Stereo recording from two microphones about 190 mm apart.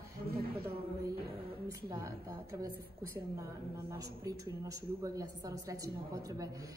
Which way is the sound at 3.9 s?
15° right (ahead or behind).